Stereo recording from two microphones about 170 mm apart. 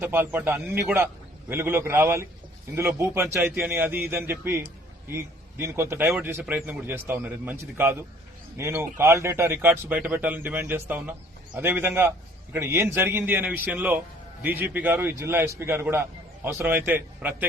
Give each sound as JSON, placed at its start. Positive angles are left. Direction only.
{"t": 0.0, "sound": "a man's voice", "side_deg": -10}